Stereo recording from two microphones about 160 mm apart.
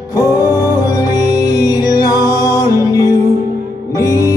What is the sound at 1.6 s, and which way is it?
Music, 25° left (ahead or behind).